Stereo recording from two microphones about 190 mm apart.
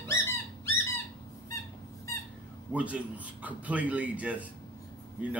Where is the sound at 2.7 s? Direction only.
5° right (ahead or behind).